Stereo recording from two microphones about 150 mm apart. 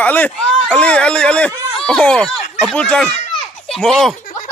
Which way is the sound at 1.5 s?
25° right (ahead or behind).